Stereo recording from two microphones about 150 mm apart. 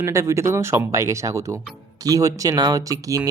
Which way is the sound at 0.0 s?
20° right (ahead or behind).